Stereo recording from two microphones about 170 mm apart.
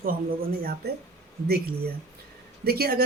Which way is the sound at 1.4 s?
65° right (ahead or behind).